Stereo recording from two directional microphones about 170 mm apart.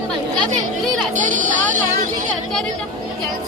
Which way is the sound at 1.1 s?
50° right (ahead or behind).